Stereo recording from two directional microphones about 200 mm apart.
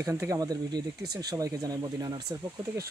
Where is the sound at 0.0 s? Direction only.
15° right (ahead or behind).